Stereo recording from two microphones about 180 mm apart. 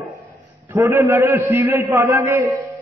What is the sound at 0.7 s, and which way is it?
A man's voice, 15° right (ahead or behind).